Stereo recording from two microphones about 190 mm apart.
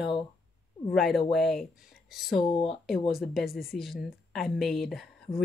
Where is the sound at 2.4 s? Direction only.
30° left (ahead or behind).